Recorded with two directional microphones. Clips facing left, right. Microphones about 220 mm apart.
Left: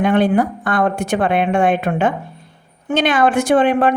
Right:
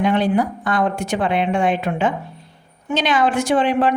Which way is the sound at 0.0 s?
55° left (ahead or behind).